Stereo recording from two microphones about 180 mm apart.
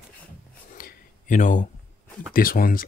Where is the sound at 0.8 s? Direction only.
45° left (ahead or behind).